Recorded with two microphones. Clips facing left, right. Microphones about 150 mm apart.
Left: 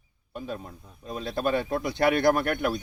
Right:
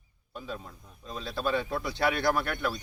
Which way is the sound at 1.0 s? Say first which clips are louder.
Left 5 dB; 15° left (ahead or behind).